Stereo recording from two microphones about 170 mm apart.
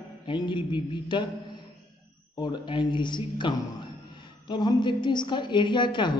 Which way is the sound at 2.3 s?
25° left (ahead or behind).